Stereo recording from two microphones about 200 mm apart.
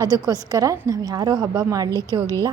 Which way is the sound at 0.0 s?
20° right (ahead or behind).